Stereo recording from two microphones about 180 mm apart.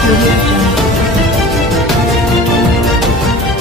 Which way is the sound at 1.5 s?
Centre (ahead or behind).